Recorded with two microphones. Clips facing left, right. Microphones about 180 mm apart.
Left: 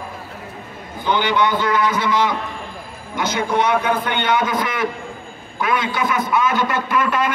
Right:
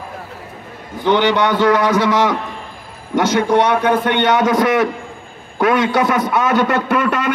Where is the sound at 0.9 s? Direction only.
80° right.